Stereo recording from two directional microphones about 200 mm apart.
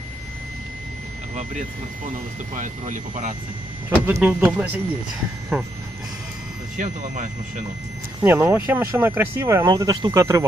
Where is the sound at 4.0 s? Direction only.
10° right (ahead or behind).